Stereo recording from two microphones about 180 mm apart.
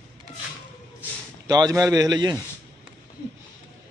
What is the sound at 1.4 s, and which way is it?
Speech, 20° right (ahead or behind).